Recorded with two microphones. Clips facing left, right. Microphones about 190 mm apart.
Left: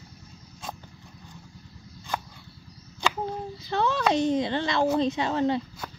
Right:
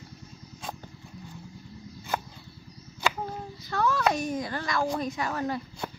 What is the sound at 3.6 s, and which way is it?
Speech, 20° left (ahead or behind).